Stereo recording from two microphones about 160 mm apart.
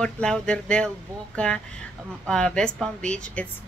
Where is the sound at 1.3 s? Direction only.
5° left (ahead or behind).